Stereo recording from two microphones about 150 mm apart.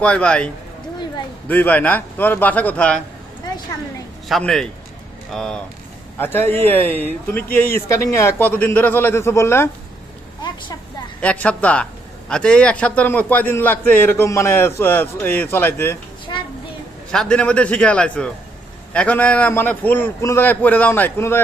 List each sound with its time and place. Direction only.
0.0 s a man's voice: 5° left (ahead or behind)
1.5 s a man's voice: 10° left (ahead or behind)
4.3 s speech: 5° left (ahead or behind)
6.1 s a man's voice: 15° left (ahead or behind)
11.1 s a man's voice: 10° left (ahead or behind)
17.1 s a man's voice: 5° left (ahead or behind)